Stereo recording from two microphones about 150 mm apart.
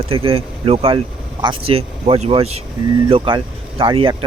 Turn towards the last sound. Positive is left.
turn(degrees=-35)  # may be behind; listen again after turning